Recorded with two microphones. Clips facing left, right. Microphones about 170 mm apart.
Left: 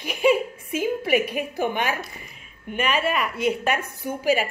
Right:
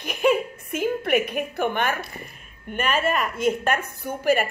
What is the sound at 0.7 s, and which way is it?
A woman's voice, 60° right (ahead or behind).